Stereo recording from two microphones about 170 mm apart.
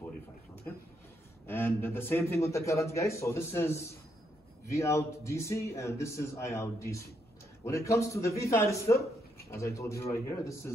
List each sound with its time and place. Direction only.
1.5 s a man's voice: 15° left (ahead or behind)